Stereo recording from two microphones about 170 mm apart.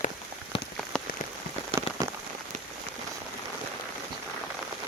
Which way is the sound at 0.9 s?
5° left (ahead or behind).